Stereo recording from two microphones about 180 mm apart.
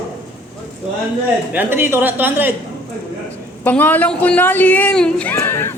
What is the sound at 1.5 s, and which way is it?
Speech, 10° right (ahead or behind).